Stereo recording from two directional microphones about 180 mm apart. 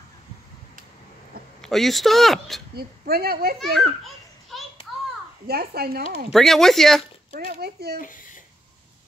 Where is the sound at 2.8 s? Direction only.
60° right (ahead or behind).